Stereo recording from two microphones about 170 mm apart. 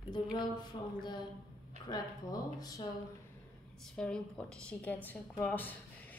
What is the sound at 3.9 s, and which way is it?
A woman's voice, 5° left (ahead or behind).